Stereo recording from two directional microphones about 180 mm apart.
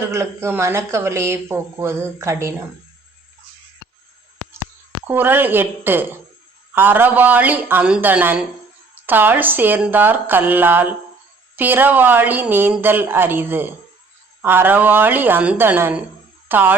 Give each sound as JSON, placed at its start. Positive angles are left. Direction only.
{"t": 0.1, "sound": "speech", "side_deg": -15}
{"t": 5.0, "sound": "speech", "side_deg": -10}